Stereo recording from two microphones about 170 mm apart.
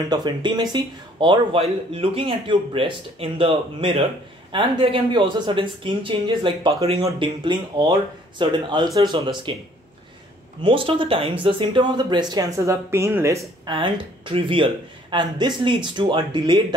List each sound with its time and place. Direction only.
0.1 s speech: 25° right (ahead or behind)
10.6 s speech: 30° right (ahead or behind)